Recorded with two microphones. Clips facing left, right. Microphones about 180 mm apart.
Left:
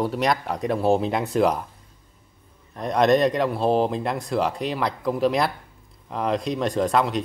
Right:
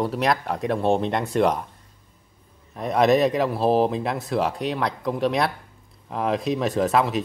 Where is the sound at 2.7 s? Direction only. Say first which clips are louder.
Even; centre (ahead or behind).